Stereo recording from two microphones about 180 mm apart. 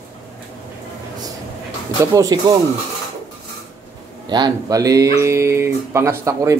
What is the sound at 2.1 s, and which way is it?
Speech, 20° right (ahead or behind).